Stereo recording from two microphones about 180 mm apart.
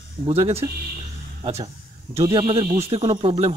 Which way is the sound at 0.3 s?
35° right (ahead or behind).